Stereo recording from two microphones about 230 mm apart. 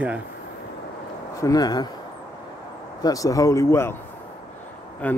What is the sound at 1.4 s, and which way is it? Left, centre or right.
Speech, centre.